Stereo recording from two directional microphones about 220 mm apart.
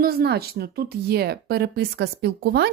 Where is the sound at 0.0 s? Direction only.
45° right (ahead or behind).